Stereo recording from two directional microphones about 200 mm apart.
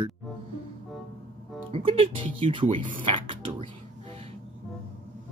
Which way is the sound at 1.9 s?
30° right (ahead or behind).